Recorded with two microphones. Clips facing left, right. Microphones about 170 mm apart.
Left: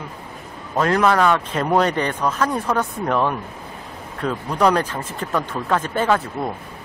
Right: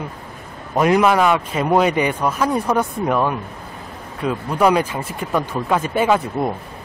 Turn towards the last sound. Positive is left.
turn(degrees=-15)  # may be behind; listen again after turning